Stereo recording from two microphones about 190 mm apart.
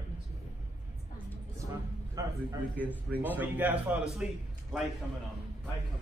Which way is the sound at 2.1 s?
20° right (ahead or behind).